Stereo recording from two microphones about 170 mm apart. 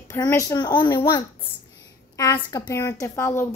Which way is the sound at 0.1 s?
20° left (ahead or behind).